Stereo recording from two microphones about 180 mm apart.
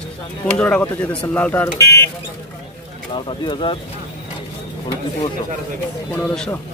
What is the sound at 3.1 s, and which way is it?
Speech, 30° left (ahead or behind).